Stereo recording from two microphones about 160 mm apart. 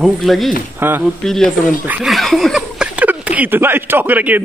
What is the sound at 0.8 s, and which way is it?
Speech, 15° right (ahead or behind).